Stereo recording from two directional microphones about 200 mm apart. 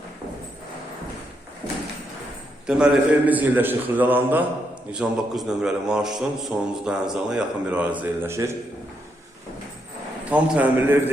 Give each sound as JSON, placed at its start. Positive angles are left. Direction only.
{"t": 2.6, "sound": "a man's voice", "side_deg": -5}
{"t": 10.2, "sound": "a man's voice", "side_deg": -5}